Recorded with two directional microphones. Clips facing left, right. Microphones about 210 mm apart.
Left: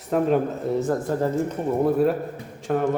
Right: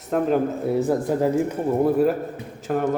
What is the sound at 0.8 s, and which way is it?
A man's voice, 10° right (ahead or behind).